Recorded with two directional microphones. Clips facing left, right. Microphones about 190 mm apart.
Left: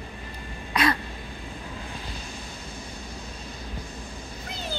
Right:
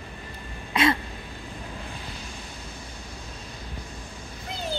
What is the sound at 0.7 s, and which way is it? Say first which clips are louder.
Throat clearing: right 2 dB; 25° right (ahead or behind).